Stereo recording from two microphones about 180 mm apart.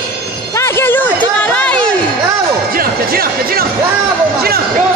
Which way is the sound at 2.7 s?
55° right (ahead or behind).